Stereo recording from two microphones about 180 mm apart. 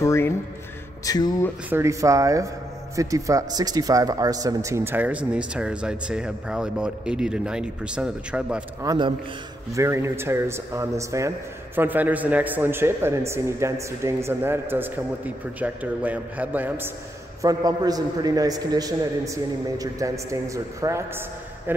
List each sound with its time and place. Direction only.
0.0 s speech: 15° left (ahead or behind)
1.7 s a man's voice: 15° right (ahead or behind)
8.8 s a man's voice: 25° right (ahead or behind)
9.8 s a man's voice: 15° right (ahead or behind)